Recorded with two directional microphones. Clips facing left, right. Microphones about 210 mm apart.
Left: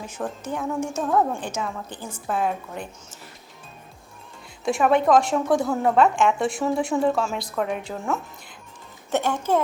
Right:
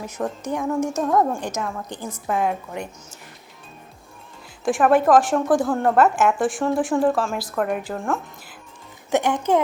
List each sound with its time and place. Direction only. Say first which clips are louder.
0.2 s a woman's voice: right 3 dB; centre (ahead or behind)
1.4 s a woman's voice: right 2 dB; 10° right (ahead or behind)
4.6 s a woman's voice: right 2 dB; centre (ahead or behind)
9.0 s a woman's voice: right 3 dB; 15° right (ahead or behind)